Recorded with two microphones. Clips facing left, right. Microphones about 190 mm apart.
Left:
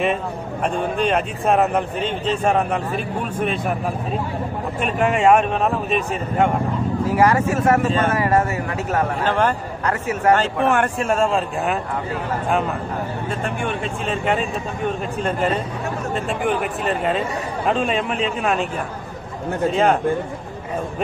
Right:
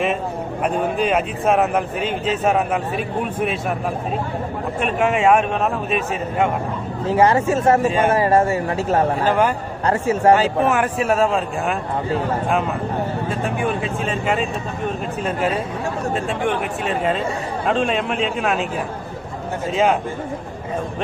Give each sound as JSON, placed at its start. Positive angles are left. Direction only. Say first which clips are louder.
{"t": 0.7, "sound": "speech", "louder": "right 1 dB", "side_deg": -5}
{"t": 4.8, "sound": "speech", "louder": "even", "side_deg": 0}
{"t": 7.1, "sound": "speech", "louder": "right 2 dB", "side_deg": -25}
{"t": 9.2, "sound": "a man's voice", "louder": "right 2 dB", "side_deg": -10}
{"t": 9.8, "sound": "speech", "louder": "right 4 dB", "side_deg": -30}
{"t": 10.3, "sound": "speech", "louder": "right 1 dB", "side_deg": -5}
{"t": 13.3, "sound": "speech", "louder": "right 1 dB", "side_deg": 0}
{"t": 16.4, "sound": "speech", "louder": "left 3 dB", "side_deg": 0}
{"t": 19.7, "sound": "speech", "louder": "right 1 dB", "side_deg": 0}